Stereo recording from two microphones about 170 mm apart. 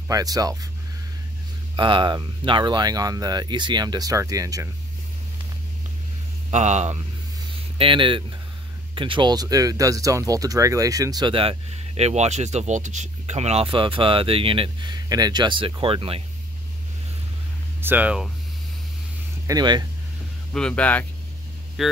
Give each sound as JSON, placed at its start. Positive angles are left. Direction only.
{"t": 0.1, "sound": "speech", "side_deg": -20}
{"t": 1.8, "sound": "speech", "side_deg": -30}
{"t": 6.5, "sound": "speech", "side_deg": -45}
{"t": 7.7, "sound": "speech", "side_deg": -30}
{"t": 12.0, "sound": "speech", "side_deg": -40}
{"t": 17.7, "sound": "speech", "side_deg": -10}
{"t": 19.4, "sound": "speech", "side_deg": -25}
{"t": 20.5, "sound": "speech", "side_deg": 5}
{"t": 21.8, "sound": "speech", "side_deg": 0}